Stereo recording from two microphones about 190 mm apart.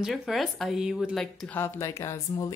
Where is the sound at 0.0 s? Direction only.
Centre (ahead or behind).